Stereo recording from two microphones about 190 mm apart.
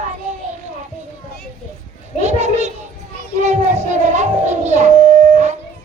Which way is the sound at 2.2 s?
35° right (ahead or behind).